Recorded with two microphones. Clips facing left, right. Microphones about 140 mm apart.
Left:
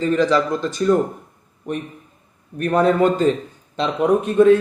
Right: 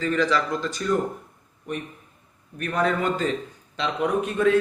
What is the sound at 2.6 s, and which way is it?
Speech, 35° left (ahead or behind).